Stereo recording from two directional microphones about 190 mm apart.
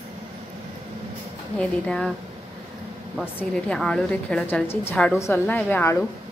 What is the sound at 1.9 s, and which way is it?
Speech, 5° left (ahead or behind).